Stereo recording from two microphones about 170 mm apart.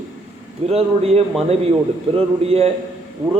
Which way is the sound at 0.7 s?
35° right (ahead or behind).